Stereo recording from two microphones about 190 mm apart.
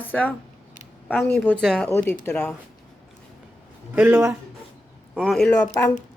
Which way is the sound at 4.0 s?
5° right (ahead or behind).